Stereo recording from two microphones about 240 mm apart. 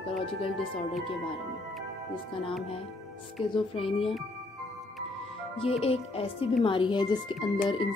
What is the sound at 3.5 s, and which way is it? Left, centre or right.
Speech, left.